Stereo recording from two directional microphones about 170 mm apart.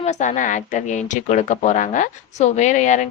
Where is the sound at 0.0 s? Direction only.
45° left (ahead or behind).